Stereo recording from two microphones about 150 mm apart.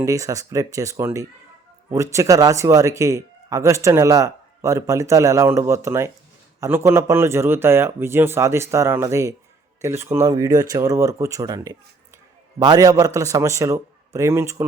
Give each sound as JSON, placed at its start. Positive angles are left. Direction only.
{"t": 0.0, "sound": "a man's voice", "side_deg": -20}